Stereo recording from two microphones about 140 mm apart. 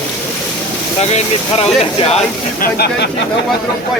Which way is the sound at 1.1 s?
45° left (ahead or behind).